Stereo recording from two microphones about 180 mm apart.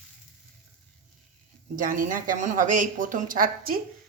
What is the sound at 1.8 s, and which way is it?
Speech, 45° right (ahead or behind).